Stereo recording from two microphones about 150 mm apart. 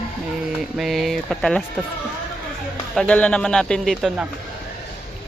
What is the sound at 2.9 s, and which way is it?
A man's voice, 10° left (ahead or behind).